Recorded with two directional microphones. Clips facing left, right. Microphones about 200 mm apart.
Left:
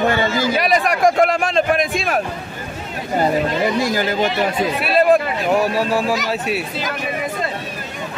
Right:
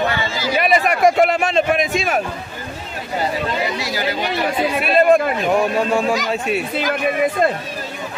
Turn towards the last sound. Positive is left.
turn(degrees=0)  # may be behind; listen again after turning